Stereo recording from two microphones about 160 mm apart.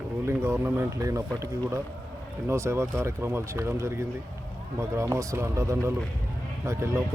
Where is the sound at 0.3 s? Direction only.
15° right (ahead or behind).